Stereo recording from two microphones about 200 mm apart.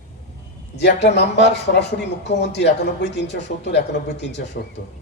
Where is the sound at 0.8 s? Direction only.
60° left (ahead or behind).